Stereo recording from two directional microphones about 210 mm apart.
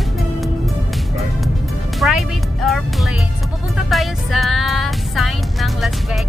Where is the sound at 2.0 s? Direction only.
Centre (ahead or behind).